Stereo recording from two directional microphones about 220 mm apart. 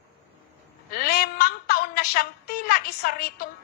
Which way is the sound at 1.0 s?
45° left (ahead or behind).